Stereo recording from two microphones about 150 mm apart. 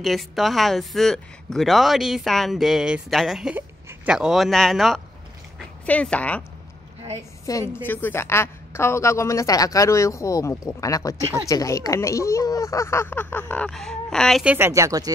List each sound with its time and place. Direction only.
0.0 s a woman's voice: centre (ahead or behind)
7.5 s a woman's voice: 25° left (ahead or behind)
7.8 s a woman's voice: 15° left (ahead or behind)
14.4 s speech: 10° right (ahead or behind)
14.7 s speech: 20° right (ahead or behind)